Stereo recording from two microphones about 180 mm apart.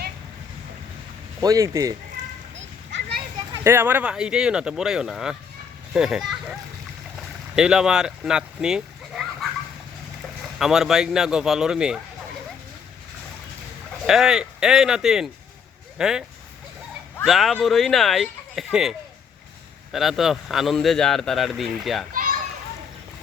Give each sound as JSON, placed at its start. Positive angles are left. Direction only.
{"t": 1.4, "sound": "speech", "side_deg": -20}
{"t": 2.9, "sound": "a sound", "side_deg": -65}
{"t": 3.5, "sound": "a man's voice", "side_deg": -15}
{"t": 7.5, "sound": "speech", "side_deg": -5}
{"t": 10.6, "sound": "a man's voice", "side_deg": 0}
{"t": 14.1, "sound": "a man's voice", "side_deg": -5}
{"t": 17.2, "sound": "a man's voice", "side_deg": 0}